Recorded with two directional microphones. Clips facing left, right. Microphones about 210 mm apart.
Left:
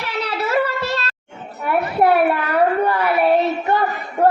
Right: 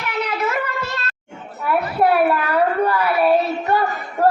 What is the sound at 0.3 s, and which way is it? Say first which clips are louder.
Child singing: left 7 dB; 30° left (ahead or behind).